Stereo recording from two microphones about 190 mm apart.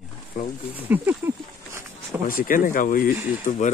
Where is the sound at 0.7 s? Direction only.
10° right (ahead or behind).